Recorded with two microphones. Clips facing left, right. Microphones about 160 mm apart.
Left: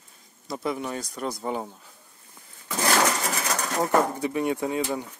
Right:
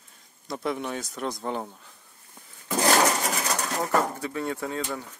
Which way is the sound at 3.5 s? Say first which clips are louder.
Left 4 dB; 15° left (ahead or behind).